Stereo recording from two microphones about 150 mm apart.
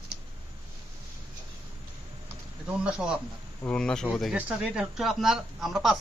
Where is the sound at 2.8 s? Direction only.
5° right (ahead or behind).